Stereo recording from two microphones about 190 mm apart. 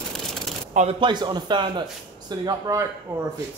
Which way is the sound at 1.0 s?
25° right (ahead or behind).